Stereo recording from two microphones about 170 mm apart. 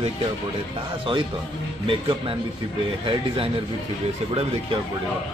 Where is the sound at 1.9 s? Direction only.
30° right (ahead or behind).